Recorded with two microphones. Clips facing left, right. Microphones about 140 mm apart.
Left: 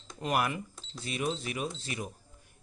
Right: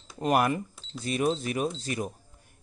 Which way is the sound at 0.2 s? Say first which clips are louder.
Right 6 dB; 40° right (ahead or behind).